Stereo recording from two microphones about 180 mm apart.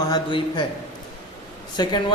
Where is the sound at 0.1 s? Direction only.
25° left (ahead or behind).